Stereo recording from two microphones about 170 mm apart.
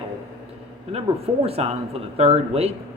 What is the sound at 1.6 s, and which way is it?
Speech, 35° right (ahead or behind).